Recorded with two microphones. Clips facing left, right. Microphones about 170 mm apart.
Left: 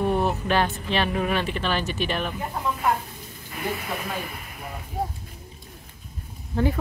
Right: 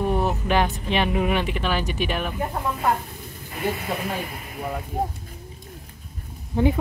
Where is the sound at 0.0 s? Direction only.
10° right (ahead or behind).